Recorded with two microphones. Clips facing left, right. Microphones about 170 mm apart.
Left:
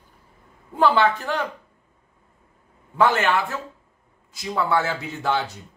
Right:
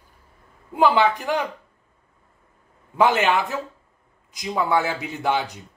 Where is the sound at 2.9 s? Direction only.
15° right (ahead or behind).